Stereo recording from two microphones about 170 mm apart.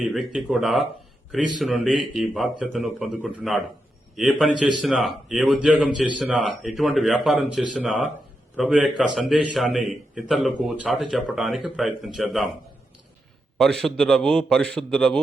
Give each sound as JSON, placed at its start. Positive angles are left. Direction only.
{"t": 0.0, "sound": "a man's voice", "side_deg": 0}
{"t": 13.6, "sound": "a man's voice", "side_deg": 5}